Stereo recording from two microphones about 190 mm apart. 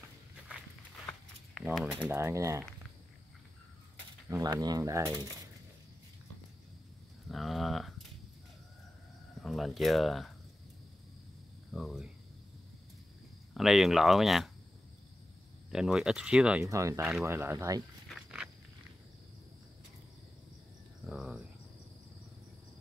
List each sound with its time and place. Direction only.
1.6 s speech: 5° right (ahead or behind)
4.3 s speech: 20° right (ahead or behind)
7.2 s a sound: centre (ahead or behind)
9.4 s speech: centre (ahead or behind)
11.7 s cricket: centre (ahead or behind)
13.5 s speech: centre (ahead or behind)
15.7 s speech: 5° right (ahead or behind)
16.7 s speech: 15° right (ahead or behind)
18.0 s a sound: 5° right (ahead or behind)
21.0 s cricket: 5° right (ahead or behind)